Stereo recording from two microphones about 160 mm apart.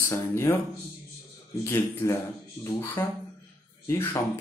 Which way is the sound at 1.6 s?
15° left (ahead or behind).